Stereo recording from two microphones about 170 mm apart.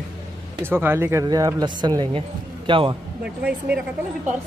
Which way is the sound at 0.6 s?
15° right (ahead or behind).